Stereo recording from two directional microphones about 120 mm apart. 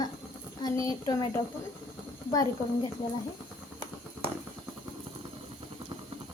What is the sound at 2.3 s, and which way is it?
Speech, 30° left (ahead or behind).